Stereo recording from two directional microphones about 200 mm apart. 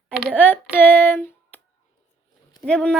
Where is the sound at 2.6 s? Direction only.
5° left (ahead or behind).